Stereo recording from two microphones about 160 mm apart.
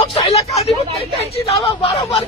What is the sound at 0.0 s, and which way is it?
Hubbub, 40° left (ahead or behind).